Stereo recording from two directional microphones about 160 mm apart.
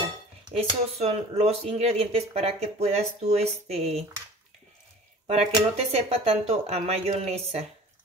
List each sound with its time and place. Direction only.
0.5 s speech: 40° right (ahead or behind)
5.2 s speech: 40° right (ahead or behind)